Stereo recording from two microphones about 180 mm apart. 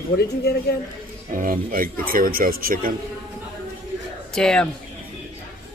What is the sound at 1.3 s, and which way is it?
Speech, 50° right (ahead or behind).